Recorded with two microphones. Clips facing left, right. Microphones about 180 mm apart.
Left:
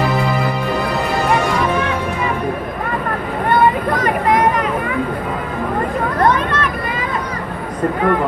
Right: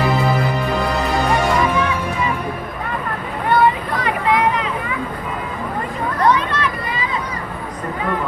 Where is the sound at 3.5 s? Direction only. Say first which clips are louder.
Left 1 dB; 45° left (ahead or behind).